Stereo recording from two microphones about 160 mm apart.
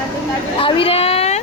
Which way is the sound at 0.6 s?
35° left (ahead or behind).